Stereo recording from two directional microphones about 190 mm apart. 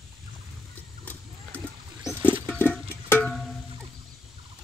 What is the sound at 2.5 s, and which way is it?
Music, 10° left (ahead or behind).